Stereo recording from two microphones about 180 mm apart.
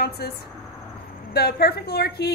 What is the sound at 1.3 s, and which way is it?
A woman's voice, 60° left (ahead or behind).